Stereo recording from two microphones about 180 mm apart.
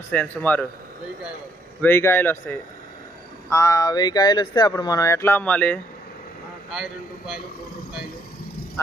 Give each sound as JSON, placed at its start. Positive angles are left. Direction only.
{"t": 0.1, "sound": "speech", "side_deg": 10}
{"t": 1.8, "sound": "speech", "side_deg": 10}
{"t": 6.7, "sound": "speech", "side_deg": 0}